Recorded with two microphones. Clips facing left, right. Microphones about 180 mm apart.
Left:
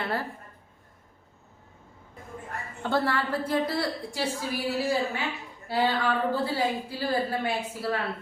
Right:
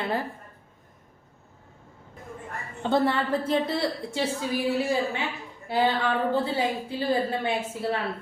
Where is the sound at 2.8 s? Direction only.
20° right (ahead or behind).